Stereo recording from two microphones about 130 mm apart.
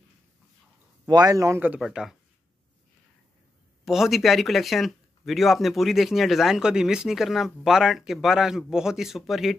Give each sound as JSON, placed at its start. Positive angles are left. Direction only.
{"t": 1.0, "sound": "a man's voice", "side_deg": -30}
{"t": 1.8, "sound": "speech", "side_deg": -5}
{"t": 3.8, "sound": "speech", "side_deg": 0}